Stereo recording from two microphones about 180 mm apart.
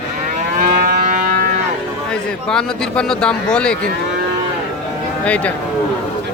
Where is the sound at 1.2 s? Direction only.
60° right (ahead or behind).